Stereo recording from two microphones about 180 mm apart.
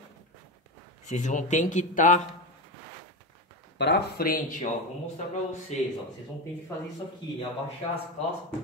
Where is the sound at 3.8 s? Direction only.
70° left (ahead or behind); by 4.6 s 50° left (ahead or behind).